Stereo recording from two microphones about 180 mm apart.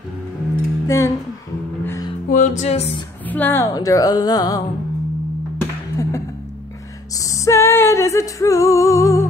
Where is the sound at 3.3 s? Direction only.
10° left (ahead or behind).